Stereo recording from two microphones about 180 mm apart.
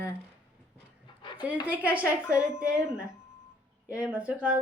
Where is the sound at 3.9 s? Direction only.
5° right (ahead or behind).